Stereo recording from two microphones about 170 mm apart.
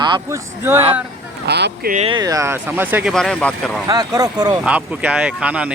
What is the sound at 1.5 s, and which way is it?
Speech, 75° right (ahead or behind).